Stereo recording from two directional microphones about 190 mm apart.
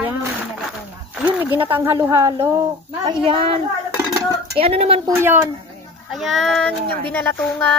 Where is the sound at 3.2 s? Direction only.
30° right (ahead or behind).